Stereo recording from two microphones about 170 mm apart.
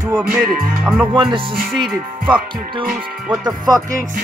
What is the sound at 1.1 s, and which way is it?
Music, 25° right (ahead or behind).